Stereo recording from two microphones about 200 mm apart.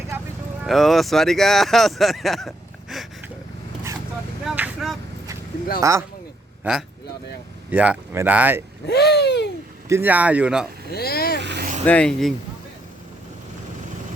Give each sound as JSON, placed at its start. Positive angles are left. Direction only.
{"t": 0.6, "sound": "speech", "side_deg": 0}
{"t": 2.9, "sound": "a sound", "side_deg": 0}
{"t": 4.4, "sound": "a sound", "side_deg": -5}
{"t": 5.8, "sound": "speech", "side_deg": -15}
{"t": 8.9, "sound": "a sound", "side_deg": 55}
{"t": 9.9, "sound": "speech", "side_deg": -10}
{"t": 10.9, "sound": "vehicle", "side_deg": 50}
{"t": 11.3, "sound": "vehicle", "side_deg": -55}
{"t": 11.9, "sound": "speech", "side_deg": 5}